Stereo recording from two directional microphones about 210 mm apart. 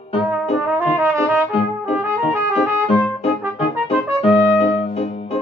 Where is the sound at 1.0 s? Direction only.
15° right (ahead or behind).